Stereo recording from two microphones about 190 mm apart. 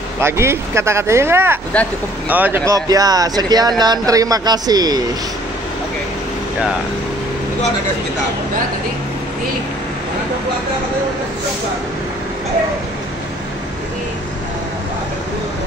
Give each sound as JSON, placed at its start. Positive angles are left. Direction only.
{"t": 0.2, "sound": "speech", "side_deg": -15}